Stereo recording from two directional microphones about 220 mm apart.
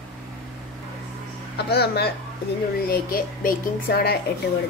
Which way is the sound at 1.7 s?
45° left (ahead or behind).